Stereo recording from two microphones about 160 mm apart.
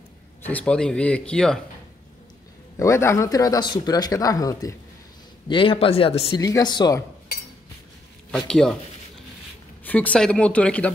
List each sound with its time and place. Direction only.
0.5 s speech: 10° left (ahead or behind)
2.8 s speech: 15° left (ahead or behind)
5.5 s speech: 35° left (ahead or behind)
6.3 s speech: 25° left (ahead or behind)
8.3 s speech: 5° left (ahead or behind)
9.8 s speech: 10° left (ahead or behind)